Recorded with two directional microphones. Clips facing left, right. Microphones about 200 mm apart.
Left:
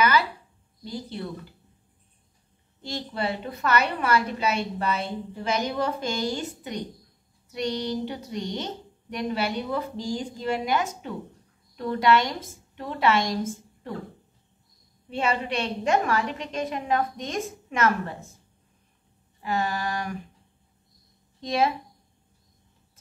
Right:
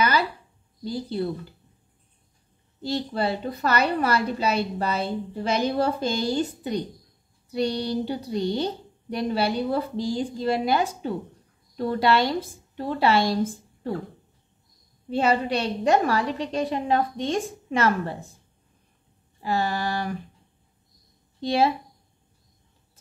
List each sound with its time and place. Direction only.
0.8 s a woman's voice: 35° right (ahead or behind)
2.8 s a woman's voice: 35° right (ahead or behind)
15.0 s a woman's voice: 35° right (ahead or behind)
19.4 s a woman's voice: 30° right (ahead or behind)
21.4 s speech: 30° right (ahead or behind)